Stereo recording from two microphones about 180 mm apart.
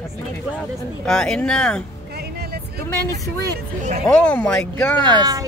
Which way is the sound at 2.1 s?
60° right (ahead or behind).